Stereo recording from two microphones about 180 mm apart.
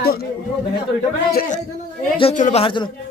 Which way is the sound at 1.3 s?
55° left (ahead or behind).